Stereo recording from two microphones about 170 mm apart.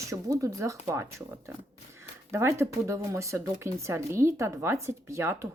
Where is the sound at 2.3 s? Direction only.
15° right (ahead or behind).